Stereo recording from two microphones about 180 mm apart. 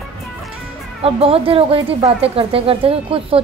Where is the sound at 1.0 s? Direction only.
30° right (ahead or behind).